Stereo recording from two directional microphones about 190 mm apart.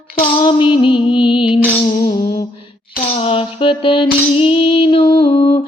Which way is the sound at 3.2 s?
30° left (ahead or behind).